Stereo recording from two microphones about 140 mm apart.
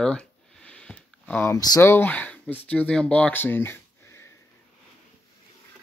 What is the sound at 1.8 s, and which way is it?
Speech, 15° left (ahead or behind).